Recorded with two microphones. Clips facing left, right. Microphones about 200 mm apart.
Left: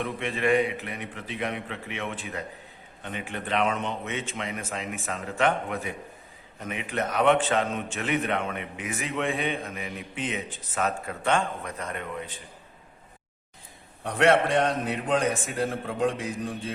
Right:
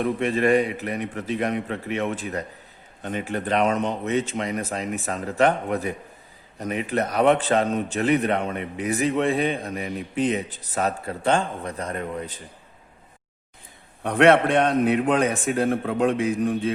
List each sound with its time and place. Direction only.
0.0 s a man's voice: 40° right (ahead or behind)
14.0 s a man's voice: 60° right (ahead or behind)